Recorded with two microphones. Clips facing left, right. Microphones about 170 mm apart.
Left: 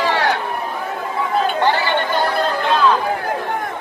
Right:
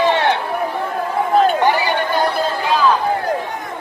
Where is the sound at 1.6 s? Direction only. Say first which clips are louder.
Right 1 dB; 15° right (ahead or behind).